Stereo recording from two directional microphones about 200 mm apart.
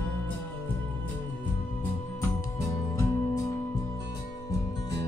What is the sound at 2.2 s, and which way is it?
Music, 15° left (ahead or behind).